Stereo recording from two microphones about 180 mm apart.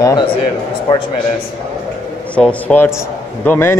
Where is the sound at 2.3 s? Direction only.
10° left (ahead or behind).